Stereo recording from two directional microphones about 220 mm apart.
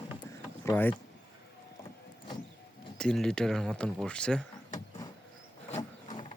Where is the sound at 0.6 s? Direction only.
10° left (ahead or behind).